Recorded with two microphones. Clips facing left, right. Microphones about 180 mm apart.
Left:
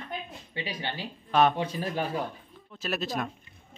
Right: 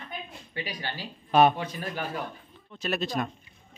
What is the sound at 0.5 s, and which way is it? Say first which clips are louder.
Speech: left 1 dB; 25° left (ahead or behind).